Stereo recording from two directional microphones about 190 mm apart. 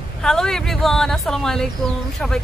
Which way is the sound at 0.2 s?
5° left (ahead or behind).